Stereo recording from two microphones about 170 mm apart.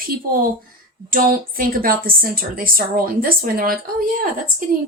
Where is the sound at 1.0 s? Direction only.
55° right (ahead or behind).